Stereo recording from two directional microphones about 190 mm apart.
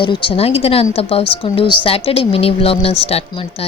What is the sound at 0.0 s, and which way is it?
A woman's voice, 25° left (ahead or behind).